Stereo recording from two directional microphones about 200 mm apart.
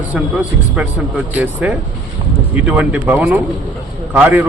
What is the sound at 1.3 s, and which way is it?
A man's voice, 10° right (ahead or behind).